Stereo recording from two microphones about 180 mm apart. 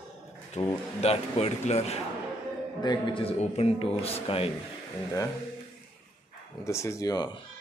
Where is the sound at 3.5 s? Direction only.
35° left (ahead or behind).